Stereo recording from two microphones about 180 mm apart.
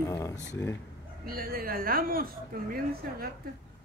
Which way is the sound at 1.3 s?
55° right (ahead or behind).